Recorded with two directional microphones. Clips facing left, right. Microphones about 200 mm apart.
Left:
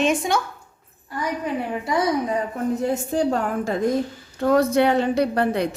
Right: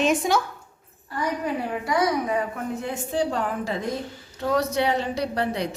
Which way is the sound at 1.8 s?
30° left (ahead or behind).